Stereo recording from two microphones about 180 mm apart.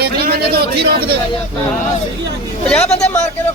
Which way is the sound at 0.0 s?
60° right (ahead or behind).